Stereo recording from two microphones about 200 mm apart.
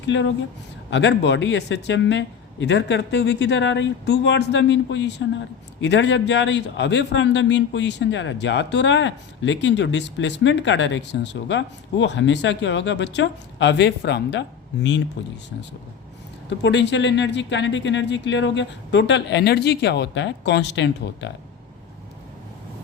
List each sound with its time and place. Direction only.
0.0 s a man's voice: 65° left (ahead or behind)
16.5 s a man's voice: 60° left (ahead or behind)